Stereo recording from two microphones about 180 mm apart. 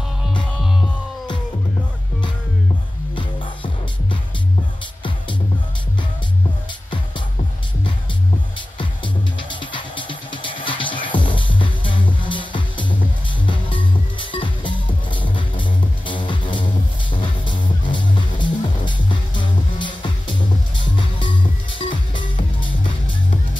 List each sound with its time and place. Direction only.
3.2 s music: 25° left (ahead or behind)
8.5 s music: 25° left (ahead or behind)
17.8 s music: 25° left (ahead or behind)